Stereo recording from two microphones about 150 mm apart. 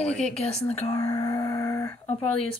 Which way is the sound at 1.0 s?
40° left (ahead or behind).